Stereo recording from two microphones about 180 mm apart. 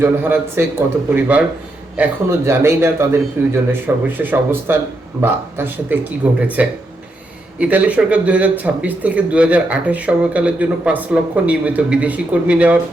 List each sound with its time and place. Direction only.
0.0 s speech: 10° right (ahead or behind)